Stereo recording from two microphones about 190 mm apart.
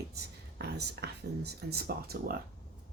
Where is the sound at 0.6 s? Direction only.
60° right (ahead or behind).